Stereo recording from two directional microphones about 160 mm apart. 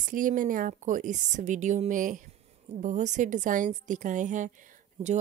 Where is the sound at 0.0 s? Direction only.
55° right (ahead or behind).